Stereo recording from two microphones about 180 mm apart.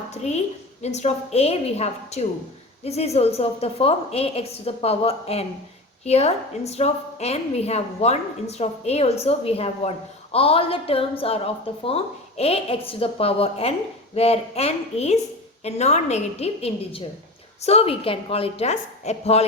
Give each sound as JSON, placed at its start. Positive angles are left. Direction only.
{"t": 0.1, "sound": "a woman's voice", "side_deg": 40}